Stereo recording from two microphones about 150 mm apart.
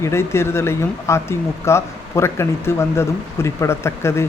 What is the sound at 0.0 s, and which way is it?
Speech, 15° left (ahead or behind).